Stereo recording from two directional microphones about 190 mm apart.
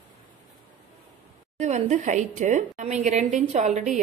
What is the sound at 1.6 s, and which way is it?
A woman's voice, 40° right (ahead or behind).